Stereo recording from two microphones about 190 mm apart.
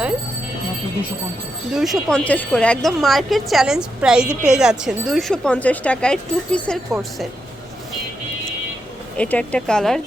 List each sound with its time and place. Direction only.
1.7 s speech: centre (ahead or behind)
9.1 s speech: 5° left (ahead or behind)